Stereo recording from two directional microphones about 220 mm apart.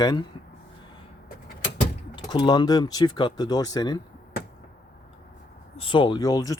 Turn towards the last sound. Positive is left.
turn(degrees=15)  # may be behind; listen again after turning